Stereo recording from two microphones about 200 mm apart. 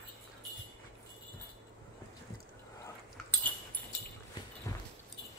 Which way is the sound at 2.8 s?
10° left (ahead or behind).